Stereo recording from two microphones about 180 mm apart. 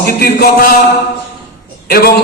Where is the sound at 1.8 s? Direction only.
60° left (ahead or behind).